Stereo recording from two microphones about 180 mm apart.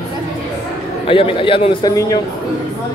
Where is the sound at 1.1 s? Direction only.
30° left (ahead or behind).